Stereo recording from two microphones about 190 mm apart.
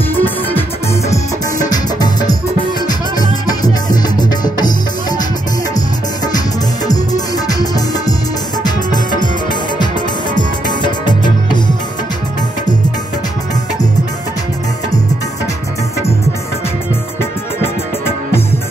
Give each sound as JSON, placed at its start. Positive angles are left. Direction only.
{"t": 0.1, "sound": "music", "side_deg": 10}
{"t": 6.9, "sound": "music", "side_deg": 20}
{"t": 10.3, "sound": "music", "side_deg": 25}